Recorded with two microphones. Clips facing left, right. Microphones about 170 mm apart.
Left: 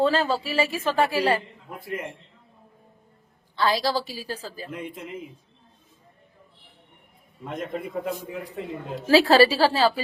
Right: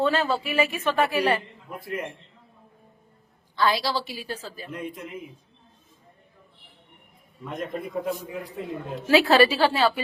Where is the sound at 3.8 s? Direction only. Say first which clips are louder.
Left 3 dB; 40° left (ahead or behind).